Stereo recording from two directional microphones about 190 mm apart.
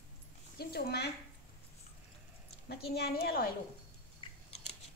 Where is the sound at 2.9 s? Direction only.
55° left (ahead or behind).